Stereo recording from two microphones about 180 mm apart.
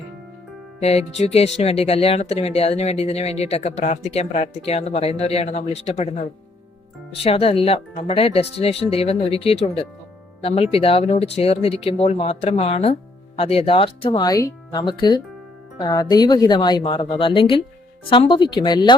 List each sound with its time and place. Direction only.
0.8 s speech: 35° left (ahead or behind)
7.3 s a woman's voice: 30° left (ahead or behind)